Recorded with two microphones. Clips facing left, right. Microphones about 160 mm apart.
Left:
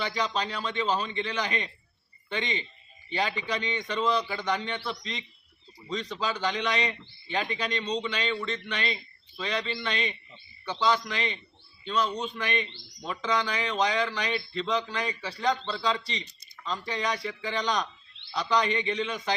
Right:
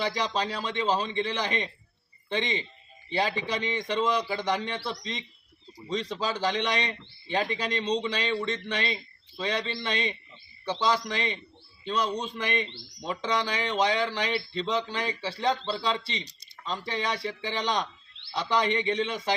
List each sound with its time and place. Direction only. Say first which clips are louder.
0.2 s a man's voice: right 1 dB; 30° right (ahead or behind)
3.1 s a man's voice: right 2 dB; 30° right (ahead or behind)